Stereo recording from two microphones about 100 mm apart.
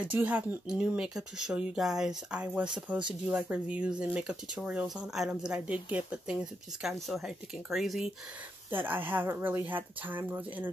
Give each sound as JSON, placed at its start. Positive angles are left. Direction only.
{"t": 0.0, "sound": "speech", "side_deg": -15}
{"t": 6.8, "sound": "speech", "side_deg": 0}
{"t": 8.6, "sound": "speech", "side_deg": -20}